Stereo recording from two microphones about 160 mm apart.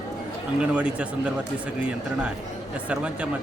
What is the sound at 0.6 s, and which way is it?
Speech, 5° right (ahead or behind).